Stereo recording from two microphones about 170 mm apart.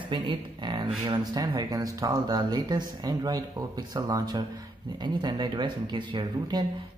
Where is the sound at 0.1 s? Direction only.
30° right (ahead or behind).